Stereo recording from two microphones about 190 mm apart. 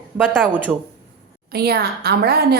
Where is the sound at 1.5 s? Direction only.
55° right (ahead or behind).